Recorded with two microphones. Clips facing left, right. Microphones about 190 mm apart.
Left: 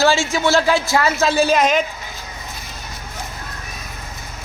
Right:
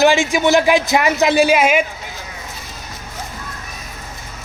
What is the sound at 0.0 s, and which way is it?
A man's voice, 15° right (ahead or behind).